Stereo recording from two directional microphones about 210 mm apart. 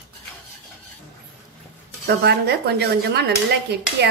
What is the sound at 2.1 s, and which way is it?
Speech, 50° right (ahead or behind).